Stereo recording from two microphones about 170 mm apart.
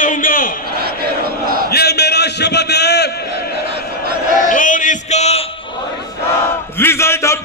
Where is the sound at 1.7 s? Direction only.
70° left (ahead or behind).